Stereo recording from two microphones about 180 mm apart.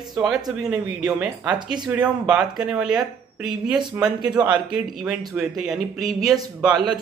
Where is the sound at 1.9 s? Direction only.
5° right (ahead or behind).